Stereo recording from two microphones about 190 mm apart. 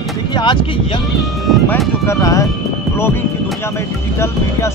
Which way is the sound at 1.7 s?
10° left (ahead or behind).